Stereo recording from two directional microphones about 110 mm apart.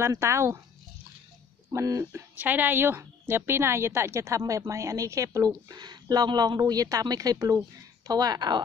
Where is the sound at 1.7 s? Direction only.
25° right (ahead or behind).